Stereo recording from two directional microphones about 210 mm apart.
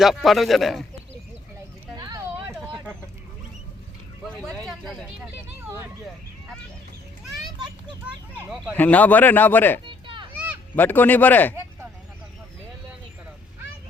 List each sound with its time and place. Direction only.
0.0 s speech: centre (ahead or behind)
2.0 s a sound: 15° right (ahead or behind)
4.2 s vehicle: centre (ahead or behind)
4.7 s a sound: centre (ahead or behind)
8.7 s speech: 10° left (ahead or behind)
9.8 s children playing: 25° right (ahead or behind)
10.8 s speech: 10° left (ahead or behind)